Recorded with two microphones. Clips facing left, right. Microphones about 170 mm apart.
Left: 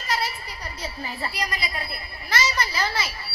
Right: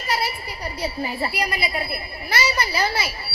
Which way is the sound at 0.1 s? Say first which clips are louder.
Right 2 dB; 10° right (ahead or behind).